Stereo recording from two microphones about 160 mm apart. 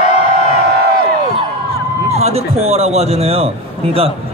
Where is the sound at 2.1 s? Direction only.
40° right (ahead or behind).